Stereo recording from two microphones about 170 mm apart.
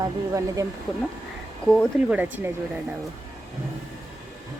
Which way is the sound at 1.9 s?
10° right (ahead or behind).